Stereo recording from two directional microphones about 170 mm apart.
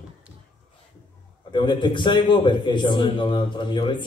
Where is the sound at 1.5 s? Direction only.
30° left (ahead or behind).